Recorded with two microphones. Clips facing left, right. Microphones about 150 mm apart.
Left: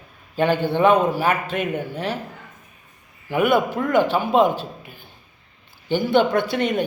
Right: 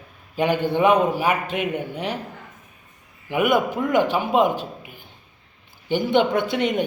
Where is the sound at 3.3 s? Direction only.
15° right (ahead or behind).